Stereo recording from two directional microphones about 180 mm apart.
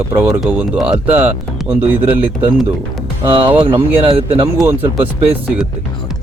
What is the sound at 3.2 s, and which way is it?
Speech, 30° right (ahead or behind).